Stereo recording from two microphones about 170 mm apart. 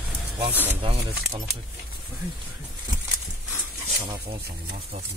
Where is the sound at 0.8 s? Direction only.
35° right (ahead or behind).